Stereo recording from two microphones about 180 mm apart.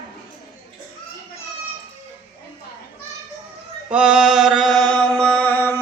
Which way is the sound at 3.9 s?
5° right (ahead or behind).